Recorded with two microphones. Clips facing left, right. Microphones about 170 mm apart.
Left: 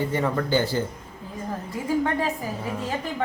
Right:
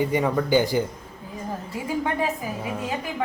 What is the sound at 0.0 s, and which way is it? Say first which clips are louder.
Speech: right 2 dB; 15° right (ahead or behind).